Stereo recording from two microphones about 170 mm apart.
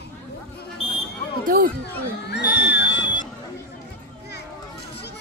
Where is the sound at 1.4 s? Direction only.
60° right (ahead or behind).